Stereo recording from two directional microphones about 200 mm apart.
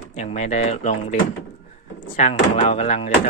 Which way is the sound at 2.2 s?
35° left (ahead or behind).